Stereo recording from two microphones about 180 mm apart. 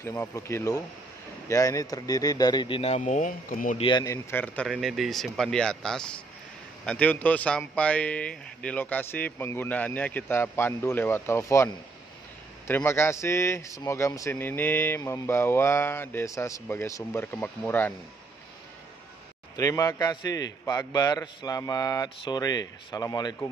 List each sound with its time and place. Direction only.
0.0 s a man's voice: 15° left (ahead or behind); by 3.7 s 50° left (ahead or behind)
3.7 s speech: 25° left (ahead or behind); by 17.9 s 10° left (ahead or behind)
19.5 s a man's voice: 20° left (ahead or behind)